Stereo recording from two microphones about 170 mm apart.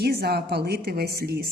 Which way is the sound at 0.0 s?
70° right (ahead or behind).